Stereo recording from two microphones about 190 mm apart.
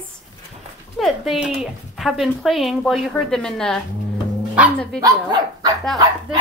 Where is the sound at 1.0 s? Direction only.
Centre (ahead or behind).